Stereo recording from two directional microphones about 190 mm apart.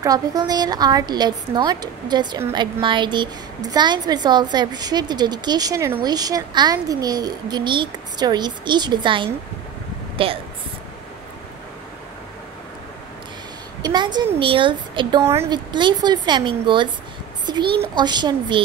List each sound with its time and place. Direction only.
0.0 s a woman's voice: 20° right (ahead or behind)
13.8 s a woman's voice: 25° right (ahead or behind)